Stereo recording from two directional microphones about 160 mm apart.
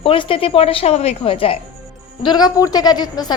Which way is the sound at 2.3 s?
25° left (ahead or behind).